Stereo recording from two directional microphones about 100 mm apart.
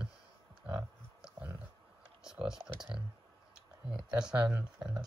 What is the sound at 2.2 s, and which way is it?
Speech, 5° right (ahead or behind).